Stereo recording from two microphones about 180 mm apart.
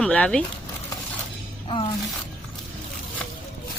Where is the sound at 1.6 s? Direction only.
30° left (ahead or behind).